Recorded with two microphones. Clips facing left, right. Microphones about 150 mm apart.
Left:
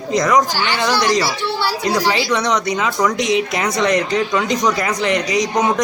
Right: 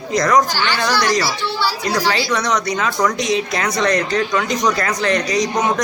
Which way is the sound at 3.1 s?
20° left (ahead or behind).